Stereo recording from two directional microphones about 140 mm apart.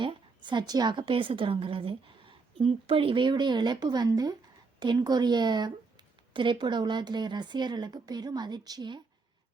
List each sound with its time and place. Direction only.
0.0 s speech: 35° right (ahead or behind)